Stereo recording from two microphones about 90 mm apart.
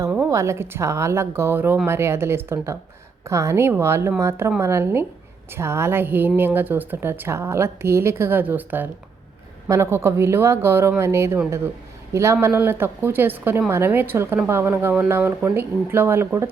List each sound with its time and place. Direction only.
0.3 s a woman's voice: 35° right (ahead or behind)
9.6 s a woman's voice: 30° right (ahead or behind)